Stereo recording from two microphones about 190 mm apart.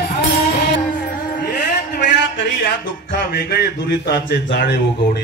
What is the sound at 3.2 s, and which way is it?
A man's voice, 50° left (ahead or behind).